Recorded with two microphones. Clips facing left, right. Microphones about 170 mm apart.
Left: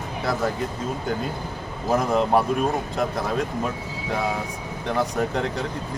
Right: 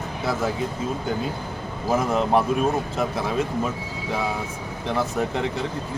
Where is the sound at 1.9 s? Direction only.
Centre (ahead or behind).